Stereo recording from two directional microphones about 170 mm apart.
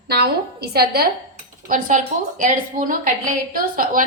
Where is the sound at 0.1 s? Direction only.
75° right (ahead or behind).